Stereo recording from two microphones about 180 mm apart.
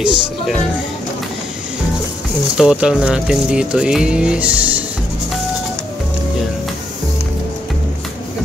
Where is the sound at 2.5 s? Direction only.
5° right (ahead or behind).